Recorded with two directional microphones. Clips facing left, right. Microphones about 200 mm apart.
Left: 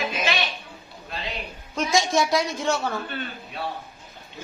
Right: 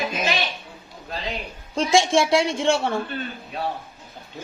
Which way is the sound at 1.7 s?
30° right (ahead or behind).